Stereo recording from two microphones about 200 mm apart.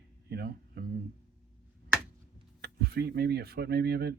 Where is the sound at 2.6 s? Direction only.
50° right (ahead or behind).